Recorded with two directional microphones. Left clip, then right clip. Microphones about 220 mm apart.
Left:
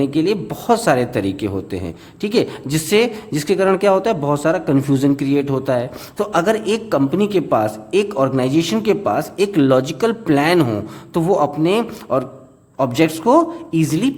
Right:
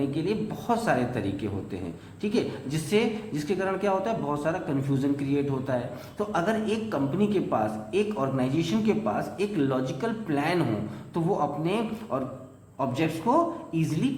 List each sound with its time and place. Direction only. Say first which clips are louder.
0.0 s a man's voice: left 11 dB; 50° left (ahead or behind)